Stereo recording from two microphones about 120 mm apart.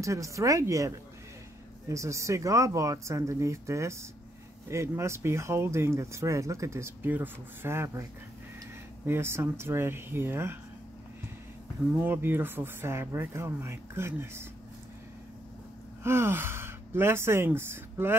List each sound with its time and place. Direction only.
0.0 s speech: 25° right (ahead or behind)
12.0 s speech: 20° right (ahead or behind)
16.0 s speech: 20° right (ahead or behind)